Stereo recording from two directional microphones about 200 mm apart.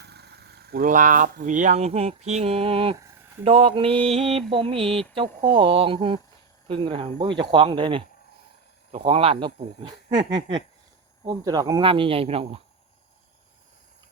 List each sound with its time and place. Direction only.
0.0 s speech: 55° right (ahead or behind); by 12.6 s 30° right (ahead or behind)